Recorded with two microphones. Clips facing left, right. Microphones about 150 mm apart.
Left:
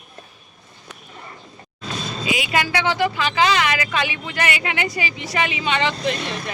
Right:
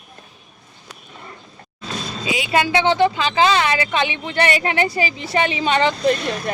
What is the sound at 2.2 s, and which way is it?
A woman's voice, 30° right (ahead or behind).